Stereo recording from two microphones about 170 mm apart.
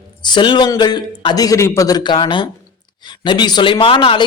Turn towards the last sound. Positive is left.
turn(degrees=30)  # may be behind; listen again after turning